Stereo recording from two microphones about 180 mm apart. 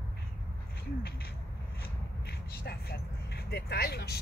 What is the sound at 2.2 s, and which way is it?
Vehicle, 60° left (ahead or behind).